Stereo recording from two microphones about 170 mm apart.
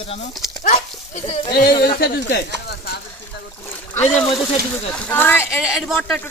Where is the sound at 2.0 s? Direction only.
70° left (ahead or behind).